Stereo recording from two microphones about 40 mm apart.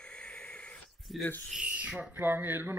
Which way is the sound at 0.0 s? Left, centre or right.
Left.